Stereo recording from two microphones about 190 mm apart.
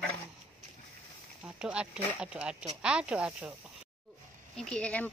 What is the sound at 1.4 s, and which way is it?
Speech, 5° right (ahead or behind).